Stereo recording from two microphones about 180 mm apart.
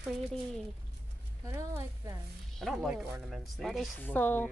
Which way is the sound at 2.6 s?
Centre (ahead or behind).